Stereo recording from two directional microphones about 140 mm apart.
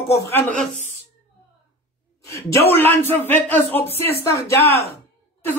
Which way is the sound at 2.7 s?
15° left (ahead or behind).